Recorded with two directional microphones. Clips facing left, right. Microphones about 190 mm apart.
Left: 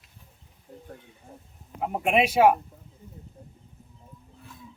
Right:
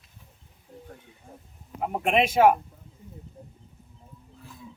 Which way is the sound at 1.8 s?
5° left (ahead or behind).